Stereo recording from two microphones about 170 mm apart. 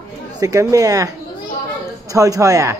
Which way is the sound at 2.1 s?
20° right (ahead or behind).